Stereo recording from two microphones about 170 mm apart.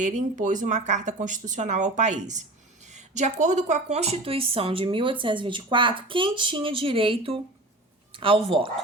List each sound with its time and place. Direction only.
0.0 s a woman's voice: 45° right (ahead or behind)